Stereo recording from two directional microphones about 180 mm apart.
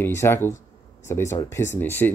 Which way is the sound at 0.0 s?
15° left (ahead or behind).